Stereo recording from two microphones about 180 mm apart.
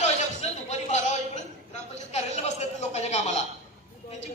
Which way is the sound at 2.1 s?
40° left (ahead or behind).